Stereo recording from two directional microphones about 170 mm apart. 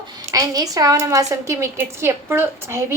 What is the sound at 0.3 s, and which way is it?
A woman's voice, 20° right (ahead or behind).